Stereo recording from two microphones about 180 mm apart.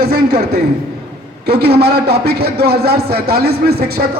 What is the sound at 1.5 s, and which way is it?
A man's voice, 65° right (ahead or behind).